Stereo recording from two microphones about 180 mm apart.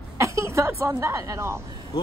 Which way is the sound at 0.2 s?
15° right (ahead or behind).